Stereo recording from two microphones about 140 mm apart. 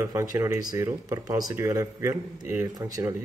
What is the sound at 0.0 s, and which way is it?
Speech, 25° right (ahead or behind).